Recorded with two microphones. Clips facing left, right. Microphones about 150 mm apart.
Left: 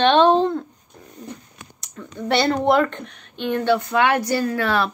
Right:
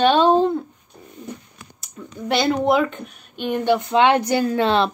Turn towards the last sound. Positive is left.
turn(degrees=-25)  # may be behind; listen again after turning